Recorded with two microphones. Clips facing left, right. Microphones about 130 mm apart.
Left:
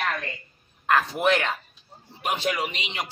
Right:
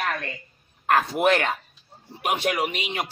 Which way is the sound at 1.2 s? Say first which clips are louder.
Right 2 dB; 50° right (ahead or behind).